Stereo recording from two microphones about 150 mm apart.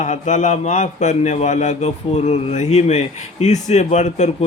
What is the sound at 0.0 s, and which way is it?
A man's voice, 55° left (ahead or behind).